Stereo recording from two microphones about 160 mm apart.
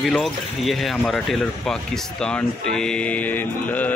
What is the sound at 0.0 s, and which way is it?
Speech, centre (ahead or behind).